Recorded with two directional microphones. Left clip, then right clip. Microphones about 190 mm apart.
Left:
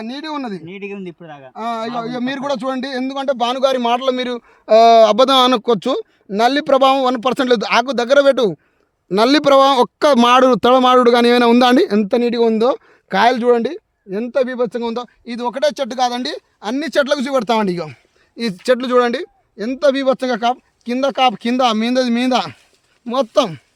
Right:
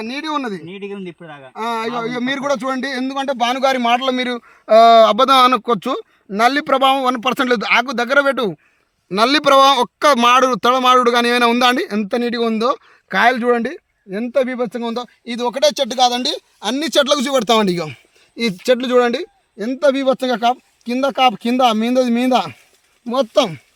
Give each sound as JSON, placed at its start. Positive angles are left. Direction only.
{"t": 0.7, "sound": "a man's voice", "side_deg": 10}
{"t": 1.5, "sound": "a man's voice", "side_deg": 40}
{"t": 15.2, "sound": "speech", "side_deg": -30}
{"t": 18.6, "sound": "speech", "side_deg": -20}